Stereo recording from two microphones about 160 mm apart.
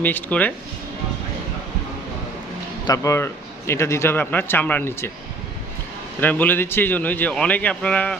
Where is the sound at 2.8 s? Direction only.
20° left (ahead or behind).